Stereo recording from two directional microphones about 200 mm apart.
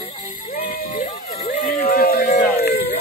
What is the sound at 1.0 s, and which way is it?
Run, 35° left (ahead or behind).